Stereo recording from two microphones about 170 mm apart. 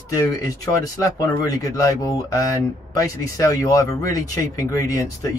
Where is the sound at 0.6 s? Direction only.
20° left (ahead or behind).